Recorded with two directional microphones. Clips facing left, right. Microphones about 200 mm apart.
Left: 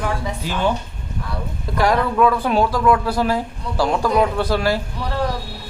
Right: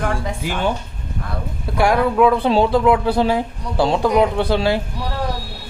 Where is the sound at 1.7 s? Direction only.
10° right (ahead or behind).